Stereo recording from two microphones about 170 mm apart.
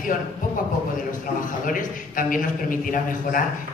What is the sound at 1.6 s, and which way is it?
A man's voice, 55° left (ahead or behind).